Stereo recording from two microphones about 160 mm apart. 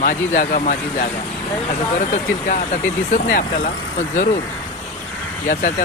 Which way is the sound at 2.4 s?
55° left (ahead or behind).